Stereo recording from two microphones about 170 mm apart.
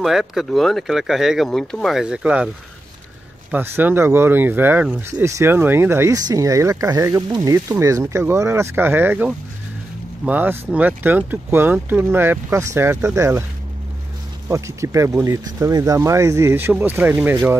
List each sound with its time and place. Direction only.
0.0 s speech: centre (ahead or behind)
3.5 s speech: 10° right (ahead or behind)
14.5 s speech: 15° right (ahead or behind)